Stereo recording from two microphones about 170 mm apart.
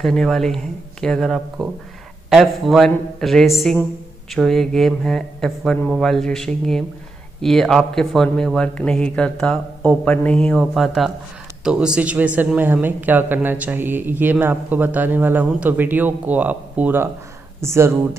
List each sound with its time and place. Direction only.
0.0 s a woman's voice: centre (ahead or behind); by 17.9 s 15° right (ahead or behind)